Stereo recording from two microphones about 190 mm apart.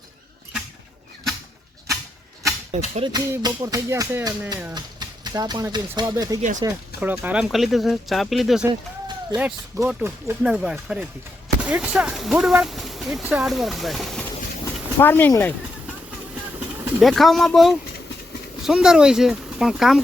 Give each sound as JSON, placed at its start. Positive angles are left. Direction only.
{"t": 2.7, "sound": "speech", "side_deg": -35}
{"t": 3.1, "sound": "speech", "side_deg": -20}
{"t": 14.6, "sound": "a sound", "side_deg": 15}
{"t": 17.0, "sound": "speech", "side_deg": 0}